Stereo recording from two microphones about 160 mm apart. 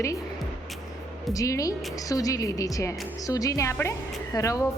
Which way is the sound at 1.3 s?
20° left (ahead or behind).